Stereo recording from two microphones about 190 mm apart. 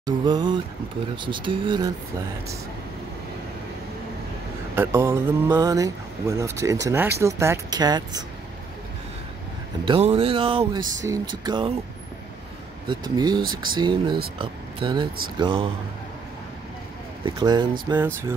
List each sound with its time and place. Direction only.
0.0 s speech: 20° right (ahead or behind)
4.7 s speech: 10° right (ahead or behind)
9.8 s speech: 30° right (ahead or behind)
12.8 s speech: 25° right (ahead or behind)
17.2 s speech: 25° right (ahead or behind)